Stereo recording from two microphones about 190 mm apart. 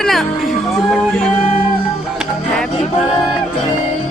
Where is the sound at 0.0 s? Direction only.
Centre (ahead or behind).